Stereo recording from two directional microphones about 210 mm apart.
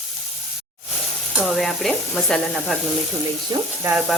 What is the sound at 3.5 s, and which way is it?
Speech, 20° right (ahead or behind).